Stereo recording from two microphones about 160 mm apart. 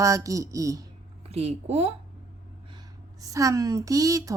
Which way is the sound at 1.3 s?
40° right (ahead or behind).